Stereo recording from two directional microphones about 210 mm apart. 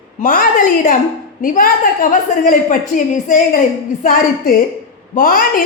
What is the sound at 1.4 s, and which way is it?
A woman's voice, 40° left (ahead or behind).